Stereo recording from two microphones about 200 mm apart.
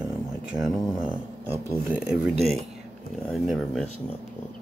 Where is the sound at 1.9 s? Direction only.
5° right (ahead or behind).